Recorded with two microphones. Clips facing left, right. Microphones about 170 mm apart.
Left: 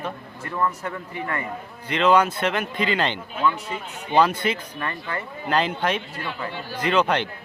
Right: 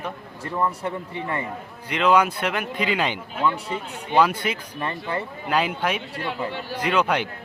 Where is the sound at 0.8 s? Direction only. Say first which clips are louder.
Right 2 dB; 30° right (ahead or behind).